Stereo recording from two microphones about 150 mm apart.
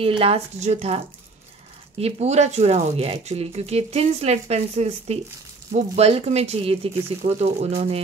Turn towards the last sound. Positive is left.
turn(degrees=-45)  # may be behind; listen again after turning